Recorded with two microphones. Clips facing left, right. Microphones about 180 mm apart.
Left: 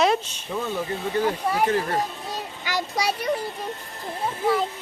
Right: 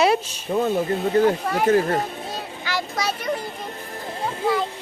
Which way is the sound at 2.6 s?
15° left (ahead or behind).